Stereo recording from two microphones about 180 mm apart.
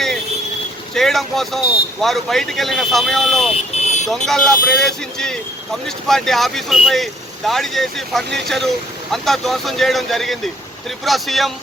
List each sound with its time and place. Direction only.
0.9 s speech: centre (ahead or behind)
3.8 s vehicle: 40° left (ahead or behind)
4.1 s speech: centre (ahead or behind)